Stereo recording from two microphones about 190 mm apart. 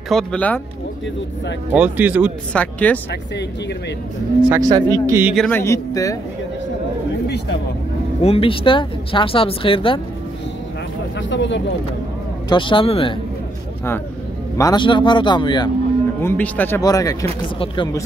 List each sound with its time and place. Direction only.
0.1 s speech: 5° left (ahead or behind)
1.7 s speech: 5° right (ahead or behind)
2.5 s speech: 5° left (ahead or behind)
4.6 s speech: 20° right (ahead or behind)
5.3 s speech: centre (ahead or behind)
5.6 s speech: 15° left (ahead or behind)
7.2 s speech: 60° left (ahead or behind)
8.2 s speech: 30° left (ahead or behind)
11.1 s speech: 75° left (ahead or behind)
12.4 s speech: 25° left (ahead or behind)
14.6 s speech: 20° left (ahead or behind)
16.2 s speech: 10° left (ahead or behind)